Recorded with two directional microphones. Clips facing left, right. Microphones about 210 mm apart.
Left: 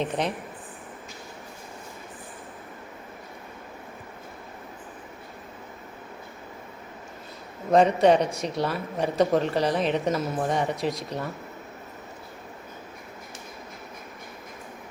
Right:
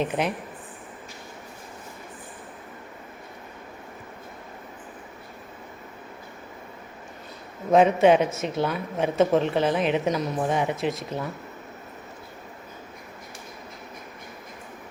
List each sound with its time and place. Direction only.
0.0 s speech: 5° right (ahead or behind)
7.7 s speech: 5° right (ahead or behind)